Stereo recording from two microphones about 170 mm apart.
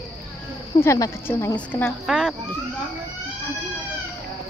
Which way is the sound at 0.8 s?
15° left (ahead or behind).